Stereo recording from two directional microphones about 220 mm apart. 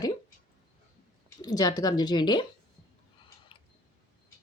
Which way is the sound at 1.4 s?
15° left (ahead or behind).